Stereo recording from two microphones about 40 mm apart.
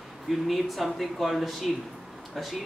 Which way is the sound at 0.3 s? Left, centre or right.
Centre.